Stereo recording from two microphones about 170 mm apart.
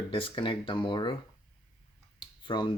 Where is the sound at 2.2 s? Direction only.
25° left (ahead or behind).